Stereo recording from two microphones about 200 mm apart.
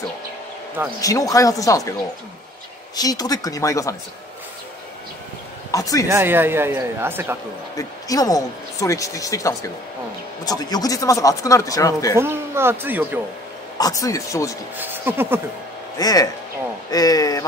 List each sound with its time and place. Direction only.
1.0 s speech: 15° left (ahead or behind)
3.0 s speech: 20° left (ahead or behind)
5.7 s speech: 15° left (ahead or behind)
6.0 s speech: 10° right (ahead or behind)
7.7 s speech: 20° left (ahead or behind)
12.2 s speech: 10° right (ahead or behind)
13.7 s speech: 15° left (ahead or behind)
14.8 s speech: 10° right (ahead or behind)
16.0 s speech: 20° left (ahead or behind)